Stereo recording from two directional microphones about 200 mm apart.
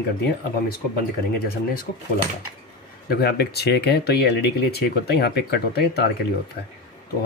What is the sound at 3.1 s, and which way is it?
Speech, 50° left (ahead or behind).